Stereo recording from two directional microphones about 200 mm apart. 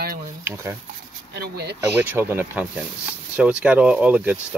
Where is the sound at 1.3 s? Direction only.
55° right (ahead or behind).